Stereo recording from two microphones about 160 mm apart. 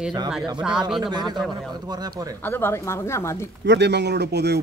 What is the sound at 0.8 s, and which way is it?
Speech, 30° right (ahead or behind).